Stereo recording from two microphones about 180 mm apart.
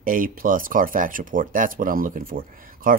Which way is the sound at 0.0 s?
50° right (ahead or behind).